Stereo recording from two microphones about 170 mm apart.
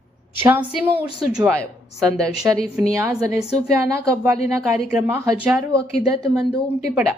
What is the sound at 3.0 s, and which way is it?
Speech, 15° right (ahead or behind).